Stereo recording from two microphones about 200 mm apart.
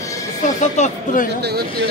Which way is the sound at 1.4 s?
55° right (ahead or behind).